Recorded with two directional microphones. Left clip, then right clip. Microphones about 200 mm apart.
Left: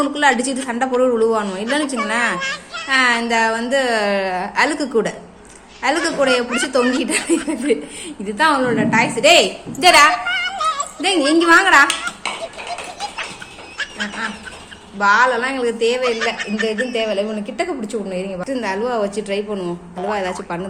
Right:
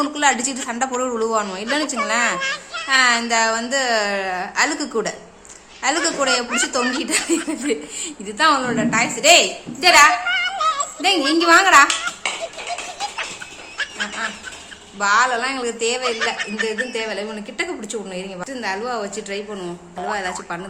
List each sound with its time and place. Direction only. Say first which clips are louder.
0.0 s a woman's voice: left 3 dB; centre (ahead or behind)
13.7 s goose: even; centre (ahead or behind)
14.9 s a woman's voice: left 3 dB; centre (ahead or behind)